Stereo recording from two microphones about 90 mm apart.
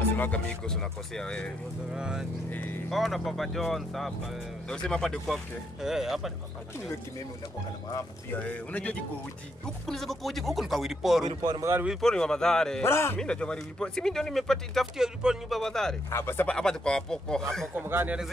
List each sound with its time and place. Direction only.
0.1 s speech: 15° left (ahead or behind)
2.0 s speech: 10° right (ahead or behind)
2.5 s speech: 20° left (ahead or behind)
2.9 s speech: centre (ahead or behind)
8.3 s speech: 15° left (ahead or behind)
9.8 s speech: 5° left (ahead or behind)
12.8 s speech: 30° left (ahead or behind)
13.2 s speech: 10° left (ahead or behind); by 15.6 s 5° right (ahead or behind)
15.6 s speech: 5° left (ahead or behind)
16.1 s speech: 30° left (ahead or behind)
16.4 s speech: 10° left (ahead or behind)
17.7 s speech: 25° right (ahead or behind)